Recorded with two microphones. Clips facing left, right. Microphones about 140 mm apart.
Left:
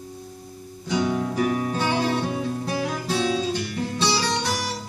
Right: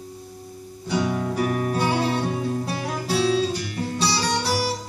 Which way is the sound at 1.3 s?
35° right (ahead or behind).